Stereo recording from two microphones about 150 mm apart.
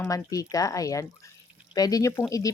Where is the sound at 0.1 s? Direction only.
25° left (ahead or behind).